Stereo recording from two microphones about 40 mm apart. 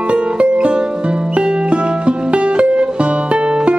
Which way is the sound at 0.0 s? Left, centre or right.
Right.